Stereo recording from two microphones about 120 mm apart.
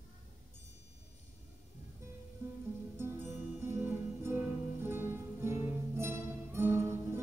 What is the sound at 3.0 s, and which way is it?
Music, 20° right (ahead or behind).